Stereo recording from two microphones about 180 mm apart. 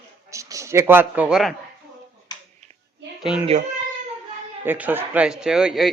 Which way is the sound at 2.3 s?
25° left (ahead or behind).